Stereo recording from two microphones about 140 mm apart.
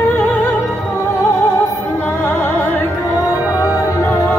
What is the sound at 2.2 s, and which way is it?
Music, 15° left (ahead or behind).